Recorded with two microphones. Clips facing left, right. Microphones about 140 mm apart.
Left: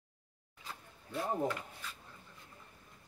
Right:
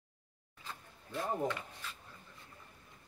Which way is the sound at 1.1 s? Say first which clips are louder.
Left 1 dB; 10° left (ahead or behind).